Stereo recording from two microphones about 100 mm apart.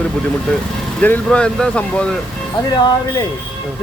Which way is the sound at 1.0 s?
10° left (ahead or behind).